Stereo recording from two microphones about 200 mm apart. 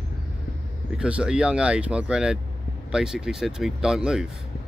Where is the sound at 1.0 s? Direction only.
5° right (ahead or behind).